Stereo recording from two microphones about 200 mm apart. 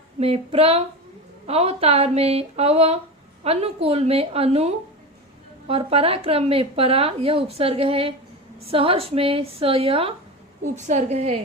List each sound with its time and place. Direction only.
0.2 s speech: 30° right (ahead or behind)